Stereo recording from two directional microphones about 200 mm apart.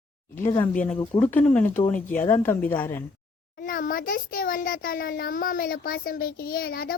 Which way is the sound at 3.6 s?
45° left (ahead or behind).